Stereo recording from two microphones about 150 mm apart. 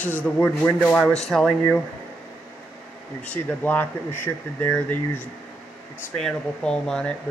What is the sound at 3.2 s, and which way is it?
Speech, 10° left (ahead or behind).